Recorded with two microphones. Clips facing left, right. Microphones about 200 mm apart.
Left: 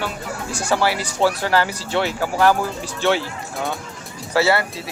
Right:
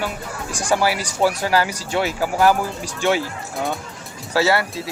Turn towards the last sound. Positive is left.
turn(degrees=-15)  # may be behind; listen again after turning